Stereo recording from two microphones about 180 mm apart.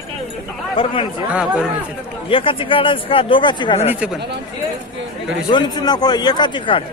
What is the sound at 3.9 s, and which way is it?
Speech, 5° right (ahead or behind).